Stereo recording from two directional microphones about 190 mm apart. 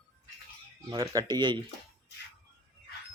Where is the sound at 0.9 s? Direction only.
20° right (ahead or behind).